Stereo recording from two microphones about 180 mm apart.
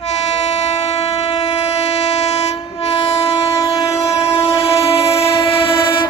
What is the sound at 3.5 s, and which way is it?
Train, 20° left (ahead or behind).